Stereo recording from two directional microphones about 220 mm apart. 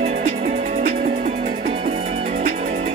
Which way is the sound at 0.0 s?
25° right (ahead or behind).